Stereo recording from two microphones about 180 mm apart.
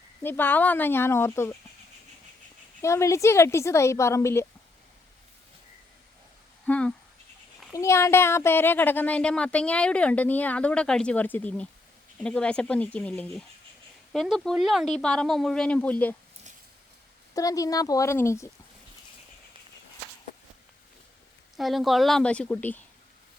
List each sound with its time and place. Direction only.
0.2 s a woman's voice: 10° left (ahead or behind)
2.8 s a woman's voice: 15° left (ahead or behind)
6.7 s a sound: 5° left (ahead or behind)
7.7 s a woman's voice: 15° left (ahead or behind)
17.3 s speech: 20° left (ahead or behind)
21.5 s speech: centre (ahead or behind)